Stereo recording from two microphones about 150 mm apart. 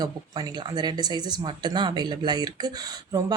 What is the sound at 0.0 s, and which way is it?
Speech, 30° right (ahead or behind).